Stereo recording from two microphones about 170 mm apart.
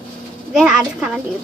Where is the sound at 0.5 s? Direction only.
Centre (ahead or behind).